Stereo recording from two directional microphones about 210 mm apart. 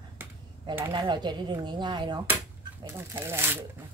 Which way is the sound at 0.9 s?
20° right (ahead or behind).